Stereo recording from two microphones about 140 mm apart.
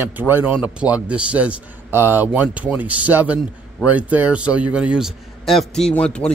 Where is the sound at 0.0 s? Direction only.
15° right (ahead or behind).